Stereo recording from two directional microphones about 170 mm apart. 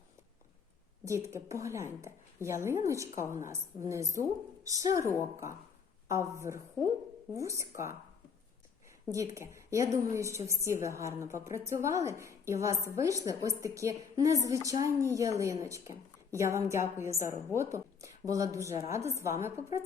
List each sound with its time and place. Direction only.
1.0 s a woman's voice: 15° right (ahead or behind)
9.0 s a woman's voice: 20° right (ahead or behind)